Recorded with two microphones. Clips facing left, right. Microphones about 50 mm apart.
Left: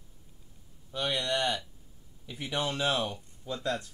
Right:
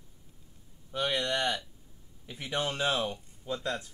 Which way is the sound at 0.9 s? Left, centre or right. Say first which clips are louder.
Even; right.